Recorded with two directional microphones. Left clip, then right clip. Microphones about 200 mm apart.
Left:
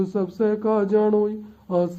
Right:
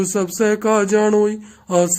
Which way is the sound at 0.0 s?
20° right (ahead or behind).